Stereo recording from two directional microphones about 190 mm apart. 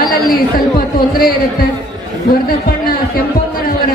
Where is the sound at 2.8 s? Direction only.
50° left (ahead or behind).